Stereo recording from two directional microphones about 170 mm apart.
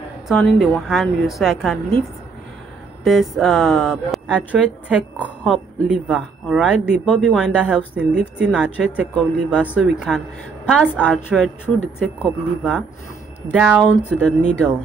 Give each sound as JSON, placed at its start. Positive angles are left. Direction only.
{"t": 0.3, "sound": "speech", "side_deg": 0}
{"t": 3.0, "sound": "speech", "side_deg": 0}